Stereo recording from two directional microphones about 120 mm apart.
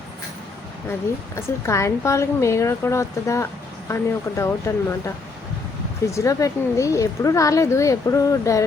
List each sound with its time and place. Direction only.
1.4 s a woman's voice: 25° left (ahead or behind)